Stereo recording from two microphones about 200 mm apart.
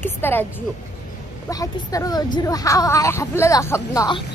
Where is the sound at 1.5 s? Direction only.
15° left (ahead or behind).